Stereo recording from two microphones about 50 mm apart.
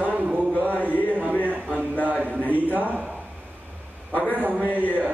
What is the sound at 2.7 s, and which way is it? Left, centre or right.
Speech, right.